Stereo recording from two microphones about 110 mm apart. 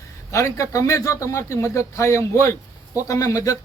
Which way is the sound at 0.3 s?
25° left (ahead or behind).